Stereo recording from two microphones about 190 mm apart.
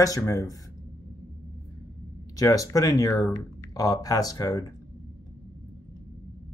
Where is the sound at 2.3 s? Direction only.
15° left (ahead or behind).